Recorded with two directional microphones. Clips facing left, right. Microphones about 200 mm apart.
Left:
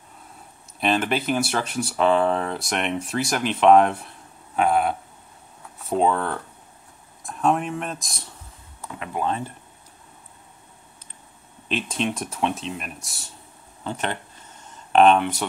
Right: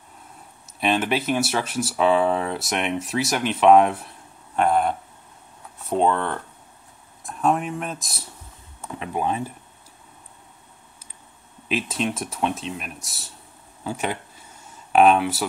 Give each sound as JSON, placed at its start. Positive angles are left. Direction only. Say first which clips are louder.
{"t": 0.7, "sound": "speech", "louder": "even", "side_deg": 0}
{"t": 8.8, "sound": "speech", "louder": "right 1 dB", "side_deg": -20}
{"t": 11.7, "sound": "speech", "louder": "right 1 dB", "side_deg": -5}